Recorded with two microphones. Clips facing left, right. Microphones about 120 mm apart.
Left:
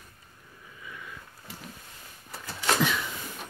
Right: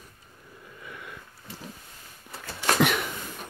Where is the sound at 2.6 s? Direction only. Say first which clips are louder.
Right 3 dB; 65° right (ahead or behind).